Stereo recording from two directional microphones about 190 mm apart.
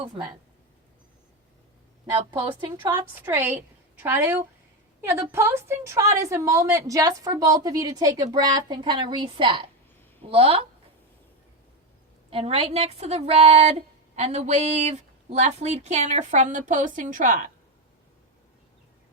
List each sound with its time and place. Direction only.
2.8 s a woman's voice: 10° right (ahead or behind); by 10.6 s 30° right (ahead or behind)
12.3 s a woman's voice: 30° right (ahead or behind)